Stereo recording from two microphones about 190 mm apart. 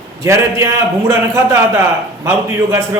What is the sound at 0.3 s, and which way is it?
Speech, 15° right (ahead or behind).